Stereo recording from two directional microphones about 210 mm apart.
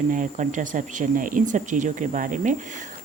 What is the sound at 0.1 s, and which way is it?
Speech, 35° right (ahead or behind).